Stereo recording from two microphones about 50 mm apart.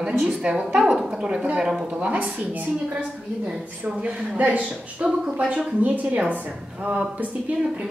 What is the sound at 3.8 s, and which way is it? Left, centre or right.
A woman's voice, right.